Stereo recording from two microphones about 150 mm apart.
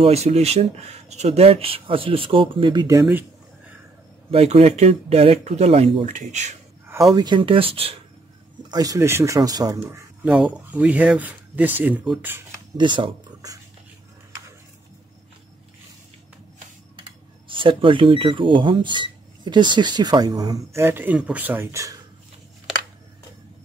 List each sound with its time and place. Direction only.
0.0 s speech: 45° right (ahead or behind); by 3.3 s 15° right (ahead or behind)
4.3 s speech: 40° right (ahead or behind)
7.2 s speech: 30° right (ahead or behind)
8.6 s speech: 25° right (ahead or behind)
12.7 s speech: 30° right (ahead or behind)
17.0 s speech: 35° right (ahead or behind); by 21.9 s 15° right (ahead or behind)